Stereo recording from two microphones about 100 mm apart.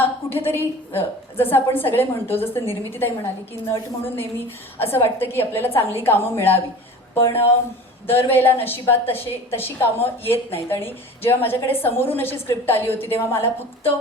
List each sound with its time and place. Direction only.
0.3 s a woman's voice: 20° left (ahead or behind)